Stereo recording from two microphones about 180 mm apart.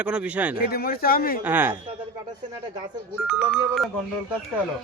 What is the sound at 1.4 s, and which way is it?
Speech, 10° right (ahead or behind).